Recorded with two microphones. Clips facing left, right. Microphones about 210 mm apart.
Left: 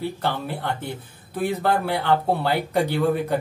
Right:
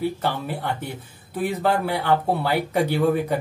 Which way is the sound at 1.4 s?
10° right (ahead or behind).